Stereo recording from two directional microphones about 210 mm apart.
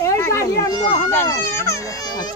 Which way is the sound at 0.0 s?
15° left (ahead or behind).